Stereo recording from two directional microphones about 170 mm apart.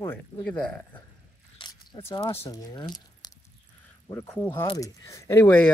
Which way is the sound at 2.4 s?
25° left (ahead or behind).